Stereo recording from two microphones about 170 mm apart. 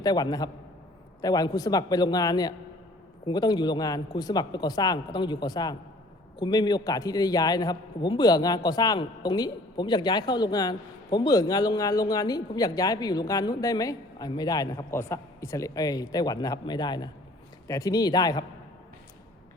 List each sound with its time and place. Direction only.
0.0 s a man's voice: 25° left (ahead or behind)